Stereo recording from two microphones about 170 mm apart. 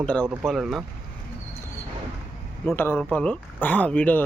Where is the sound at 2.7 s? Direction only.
10° left (ahead or behind).